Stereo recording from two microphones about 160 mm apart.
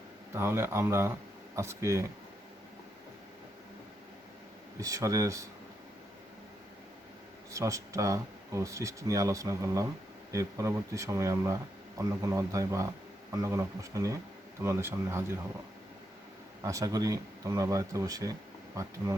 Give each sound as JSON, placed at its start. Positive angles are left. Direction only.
{"t": 0.3, "sound": "speech", "side_deg": -15}
{"t": 4.8, "sound": "speech", "side_deg": -20}
{"t": 7.5, "sound": "speech", "side_deg": -20}
{"t": 16.6, "sound": "speech", "side_deg": -20}